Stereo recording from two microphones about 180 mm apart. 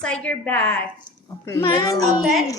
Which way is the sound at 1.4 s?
15° left (ahead or behind).